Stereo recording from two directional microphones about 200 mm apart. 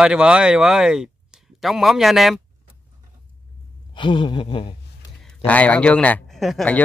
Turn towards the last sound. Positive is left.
turn(degrees=5)  # may be behind; listen again after turning